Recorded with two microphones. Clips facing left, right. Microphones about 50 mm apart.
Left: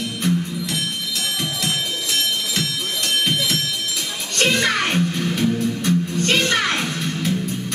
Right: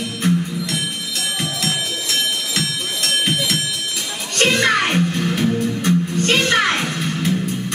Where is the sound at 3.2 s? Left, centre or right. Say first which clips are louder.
Right 1 dB; centre.